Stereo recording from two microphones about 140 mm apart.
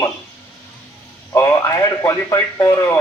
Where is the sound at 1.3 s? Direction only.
20° left (ahead or behind).